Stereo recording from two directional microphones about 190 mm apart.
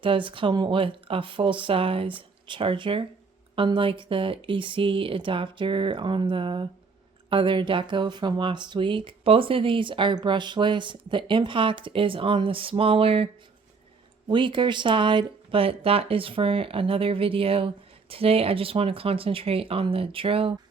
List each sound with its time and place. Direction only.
0.0 s speech: 25° right (ahead or behind)